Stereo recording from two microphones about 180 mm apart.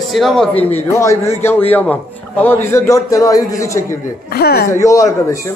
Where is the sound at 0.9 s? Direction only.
15° left (ahead or behind).